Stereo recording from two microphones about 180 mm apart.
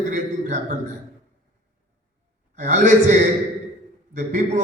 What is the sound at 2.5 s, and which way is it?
A man's voice, 40° right (ahead or behind).